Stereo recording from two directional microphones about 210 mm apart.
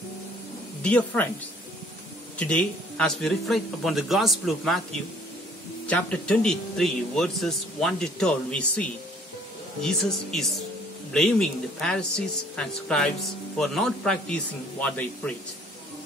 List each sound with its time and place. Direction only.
0.8 s speech: 5° left (ahead or behind)
2.3 s a man's voice: 5° left (ahead or behind)
5.9 s a man's voice: 5° left (ahead or behind)
9.8 s a man's voice: centre (ahead or behind)